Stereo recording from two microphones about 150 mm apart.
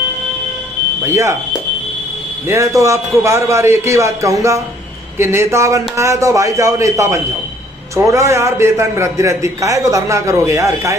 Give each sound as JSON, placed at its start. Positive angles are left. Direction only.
{"t": 1.0, "sound": "speech", "side_deg": -20}
{"t": 2.4, "sound": "a man's voice", "side_deg": -20}